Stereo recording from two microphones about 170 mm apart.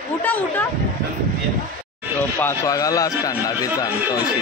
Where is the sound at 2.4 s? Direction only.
15° left (ahead or behind).